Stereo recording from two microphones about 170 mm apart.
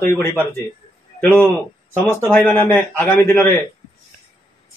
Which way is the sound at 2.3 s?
10° left (ahead or behind).